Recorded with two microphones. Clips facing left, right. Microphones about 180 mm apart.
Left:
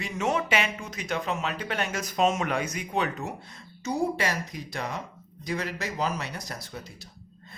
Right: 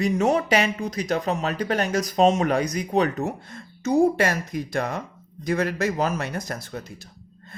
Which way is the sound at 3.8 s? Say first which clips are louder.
Right 8 dB; 50° right (ahead or behind).